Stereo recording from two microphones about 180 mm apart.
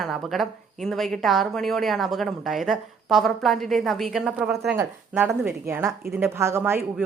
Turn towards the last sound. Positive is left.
turn(degrees=-10)  # may be behind; listen again after turning